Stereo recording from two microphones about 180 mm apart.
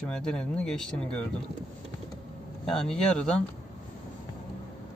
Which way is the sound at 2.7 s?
5° left (ahead or behind).